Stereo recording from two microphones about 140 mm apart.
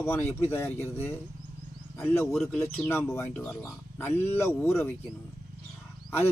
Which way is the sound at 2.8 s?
15° left (ahead or behind).